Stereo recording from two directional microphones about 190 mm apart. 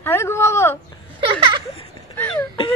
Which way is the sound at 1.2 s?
25° right (ahead or behind).